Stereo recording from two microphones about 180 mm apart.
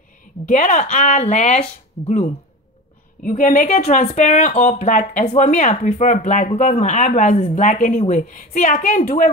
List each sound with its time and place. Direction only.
0.5 s a woman's voice: 45° left (ahead or behind)